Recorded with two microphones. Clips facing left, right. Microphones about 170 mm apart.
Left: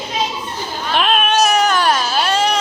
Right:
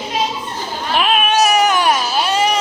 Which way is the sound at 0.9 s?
5° right (ahead or behind).